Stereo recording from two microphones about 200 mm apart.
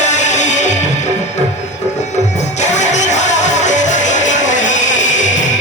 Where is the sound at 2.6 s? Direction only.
35° left (ahead or behind).